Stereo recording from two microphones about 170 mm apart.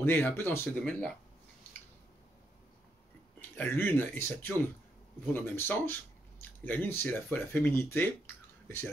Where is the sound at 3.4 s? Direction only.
10° left (ahead or behind).